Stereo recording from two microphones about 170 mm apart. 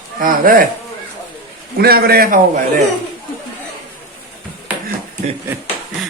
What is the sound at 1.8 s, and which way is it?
Speech, 65° right (ahead or behind).